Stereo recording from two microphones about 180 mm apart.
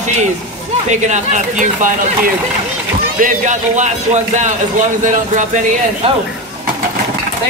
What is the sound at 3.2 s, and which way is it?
A man's voice, 45° right (ahead or behind).